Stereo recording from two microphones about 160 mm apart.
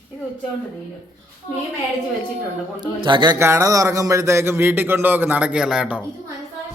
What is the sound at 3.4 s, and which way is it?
A man's voice, 20° right (ahead or behind).